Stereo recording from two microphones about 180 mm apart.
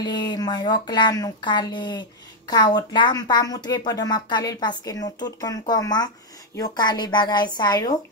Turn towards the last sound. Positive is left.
turn(degrees=25)  # may be behind; listen again after turning